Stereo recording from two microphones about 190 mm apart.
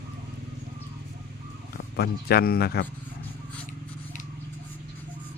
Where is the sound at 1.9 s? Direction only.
55° left (ahead or behind).